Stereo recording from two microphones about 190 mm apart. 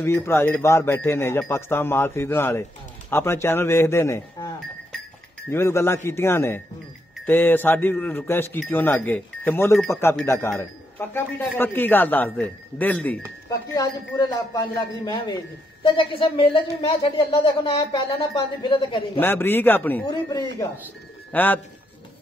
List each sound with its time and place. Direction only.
0.0 s a man's voice: 15° left (ahead or behind)
5.5 s a man's voice: 15° left (ahead or behind)
13.7 s a man's voice: 20° left (ahead or behind)
19.1 s a man's voice: 10° left (ahead or behind)
20.1 s a man's voice: 20° left (ahead or behind)
21.3 s speech: 10° left (ahead or behind)